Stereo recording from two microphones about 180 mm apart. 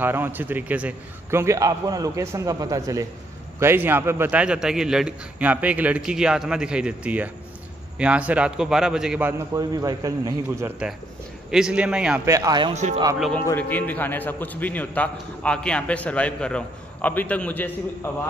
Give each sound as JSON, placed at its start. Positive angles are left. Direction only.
{"t": 0.0, "sound": "a man's voice", "side_deg": -10}
{"t": 9.5, "sound": "a man's voice", "side_deg": -20}
{"t": 11.5, "sound": "a man's voice", "side_deg": -5}
{"t": 12.3, "sound": "a man's voice", "side_deg": -20}
{"t": 12.7, "sound": "a man's voice", "side_deg": -40}
{"t": 13.5, "sound": "a man's voice", "side_deg": 10}